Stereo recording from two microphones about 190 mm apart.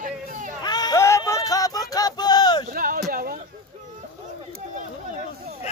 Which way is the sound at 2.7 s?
45° right (ahead or behind).